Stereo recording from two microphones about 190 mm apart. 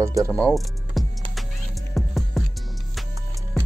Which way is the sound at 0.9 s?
Centre (ahead or behind).